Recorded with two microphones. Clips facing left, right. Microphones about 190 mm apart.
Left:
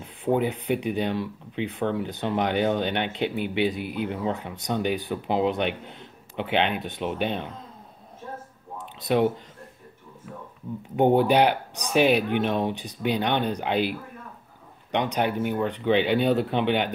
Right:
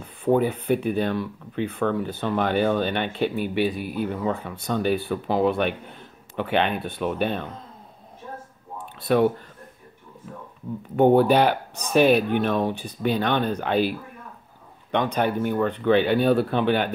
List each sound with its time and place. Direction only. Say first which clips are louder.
0.0 s speech: right 3 dB; 15° left (ahead or behind)
9.0 s speech: right 2 dB; 20° left (ahead or behind)
11.1 s a man's voice: right 2 dB; 15° left (ahead or behind)